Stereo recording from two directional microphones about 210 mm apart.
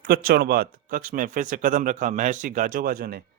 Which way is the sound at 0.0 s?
45° right (ahead or behind).